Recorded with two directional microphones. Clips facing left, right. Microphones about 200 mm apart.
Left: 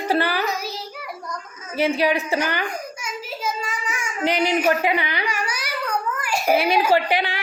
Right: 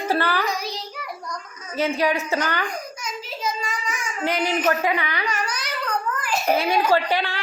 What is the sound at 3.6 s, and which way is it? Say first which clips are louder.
Baby cry: even; 10° left (ahead or behind).